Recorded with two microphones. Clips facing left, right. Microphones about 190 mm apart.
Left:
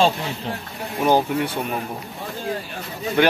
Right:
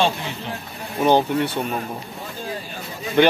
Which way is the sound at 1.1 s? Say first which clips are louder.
Right 1 dB; 10° left (ahead or behind).